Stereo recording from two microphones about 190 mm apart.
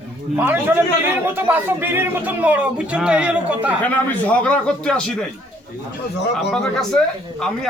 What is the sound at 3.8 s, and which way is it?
A man's voice, 10° left (ahead or behind).